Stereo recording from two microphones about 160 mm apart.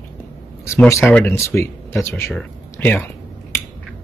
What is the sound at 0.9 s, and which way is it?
Speech, 15° left (ahead or behind).